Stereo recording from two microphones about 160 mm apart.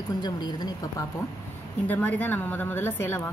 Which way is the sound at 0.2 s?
25° left (ahead or behind).